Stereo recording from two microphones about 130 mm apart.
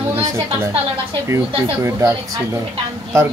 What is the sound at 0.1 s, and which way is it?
A woman's voice, 20° right (ahead or behind).